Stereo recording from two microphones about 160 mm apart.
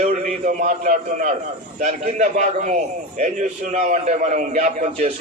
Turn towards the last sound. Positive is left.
turn(degrees=-45)  # may be behind; listen again after turning